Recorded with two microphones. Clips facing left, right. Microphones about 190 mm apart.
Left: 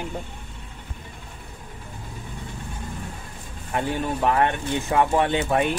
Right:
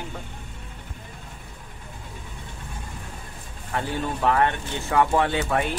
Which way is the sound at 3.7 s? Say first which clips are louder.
Left 2 dB; 20° left (ahead or behind).